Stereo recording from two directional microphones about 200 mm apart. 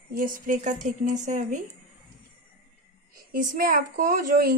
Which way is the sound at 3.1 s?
40° right (ahead or behind).